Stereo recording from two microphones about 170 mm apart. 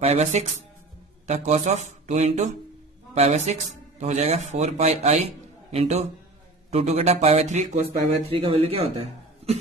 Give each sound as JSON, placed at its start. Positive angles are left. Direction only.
{"t": 0.0, "sound": "speech", "side_deg": -40}